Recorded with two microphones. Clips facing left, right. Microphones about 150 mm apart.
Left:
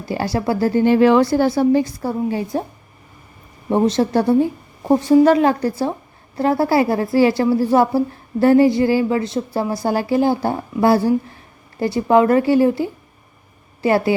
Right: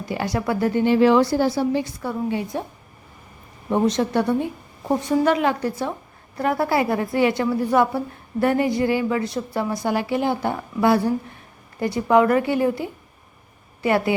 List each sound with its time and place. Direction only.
0.1 s a woman's voice: 35° left (ahead or behind)
0.9 s a woman's voice: 60° left (ahead or behind); by 2.6 s 35° left (ahead or behind)
3.7 s a woman's voice: 30° left (ahead or behind)